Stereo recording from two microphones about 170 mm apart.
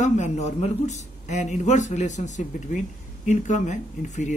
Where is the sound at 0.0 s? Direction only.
45° left (ahead or behind).